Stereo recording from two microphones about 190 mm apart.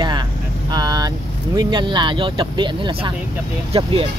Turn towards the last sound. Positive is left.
turn(degrees=-30)  # may be behind; listen again after turning